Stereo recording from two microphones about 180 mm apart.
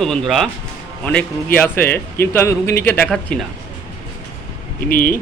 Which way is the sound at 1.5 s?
10° left (ahead or behind).